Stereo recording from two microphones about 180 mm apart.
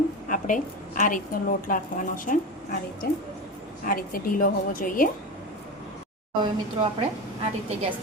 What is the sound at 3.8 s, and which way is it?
A woman's voice, 50° left (ahead or behind).